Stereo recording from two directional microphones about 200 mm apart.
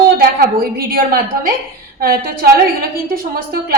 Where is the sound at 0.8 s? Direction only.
45° right (ahead or behind).